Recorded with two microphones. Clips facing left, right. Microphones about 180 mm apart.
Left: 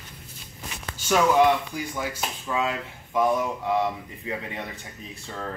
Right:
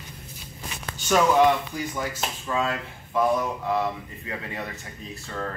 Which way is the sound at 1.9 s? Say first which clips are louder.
Right 1 dB; 10° left (ahead or behind).